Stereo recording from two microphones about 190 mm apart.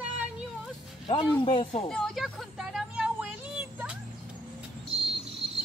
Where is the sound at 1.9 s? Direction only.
Centre (ahead or behind).